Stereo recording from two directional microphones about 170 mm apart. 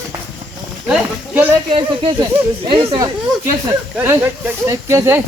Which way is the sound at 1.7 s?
30° right (ahead or behind).